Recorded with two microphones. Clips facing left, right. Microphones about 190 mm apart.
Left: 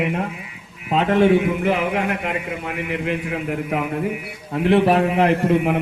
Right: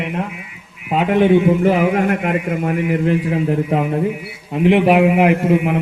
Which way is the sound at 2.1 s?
50° right (ahead or behind).